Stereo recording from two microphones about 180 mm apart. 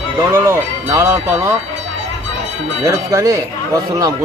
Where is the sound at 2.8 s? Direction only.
20° right (ahead or behind).